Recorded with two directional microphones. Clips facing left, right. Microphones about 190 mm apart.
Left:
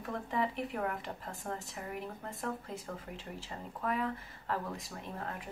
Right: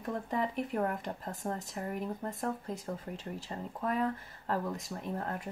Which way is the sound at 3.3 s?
40° right (ahead or behind).